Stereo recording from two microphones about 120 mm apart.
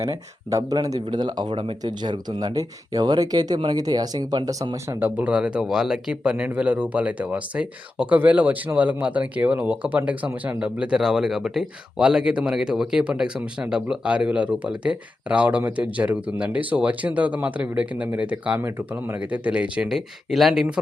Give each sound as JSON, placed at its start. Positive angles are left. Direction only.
{"t": 0.0, "sound": "speech", "side_deg": -30}
{"t": 4.9, "sound": "speech", "side_deg": -15}